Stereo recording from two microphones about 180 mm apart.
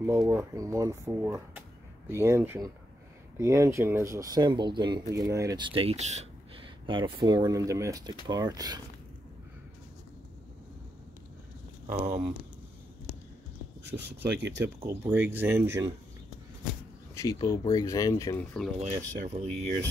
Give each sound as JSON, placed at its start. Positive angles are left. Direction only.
{"t": 0.0, "sound": "speech", "side_deg": -15}
{"t": 13.9, "sound": "speech", "side_deg": -70}
{"t": 14.6, "sound": "speech", "side_deg": -15}
{"t": 17.1, "sound": "speech", "side_deg": 20}
{"t": 18.4, "sound": "speech", "side_deg": 5}
{"t": 18.8, "sound": "speech", "side_deg": -40}